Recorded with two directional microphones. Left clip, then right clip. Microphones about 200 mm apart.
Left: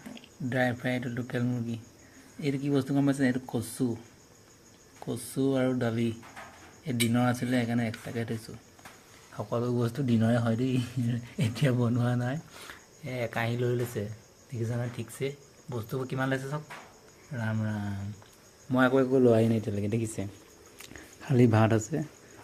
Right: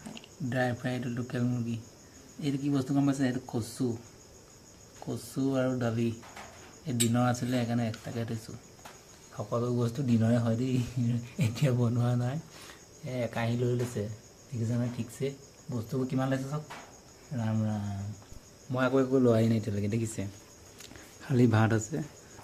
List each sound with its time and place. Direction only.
0.5 s speech: 20° left (ahead or behind)
5.0 s speech: 20° left (ahead or behind)
9.5 s speech: 25° left (ahead or behind)
19.1 s speech: 10° left (ahead or behind)